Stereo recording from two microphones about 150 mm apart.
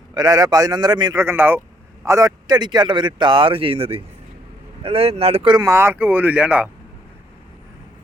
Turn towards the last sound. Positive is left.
turn(degrees=-10)  # may be behind; listen again after turning